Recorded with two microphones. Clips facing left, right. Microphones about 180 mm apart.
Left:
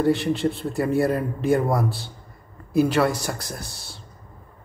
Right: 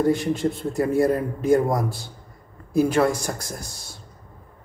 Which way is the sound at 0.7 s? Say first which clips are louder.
Right 2 dB; 20° right (ahead or behind).